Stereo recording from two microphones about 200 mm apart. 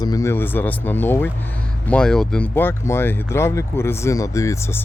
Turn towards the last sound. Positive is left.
turn(degrees=15)  # may be behind; listen again after turning